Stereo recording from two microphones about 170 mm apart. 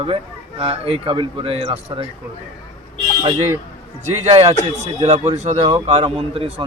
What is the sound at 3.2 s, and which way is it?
A man's voice, 35° right (ahead or behind).